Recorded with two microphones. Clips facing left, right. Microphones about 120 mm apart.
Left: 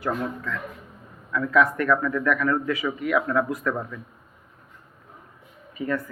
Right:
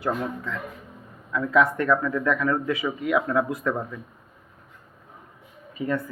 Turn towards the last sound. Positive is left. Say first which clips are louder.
# even
turn(degrees=-25)  # may be behind; listen again after turning